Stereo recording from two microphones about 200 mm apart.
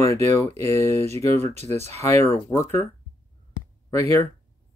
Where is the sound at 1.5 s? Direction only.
35° right (ahead or behind).